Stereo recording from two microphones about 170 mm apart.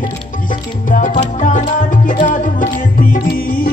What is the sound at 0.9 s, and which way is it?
Music, 50° left (ahead or behind).